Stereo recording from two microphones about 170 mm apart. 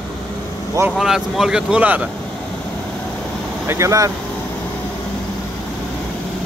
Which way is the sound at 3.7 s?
15° right (ahead or behind).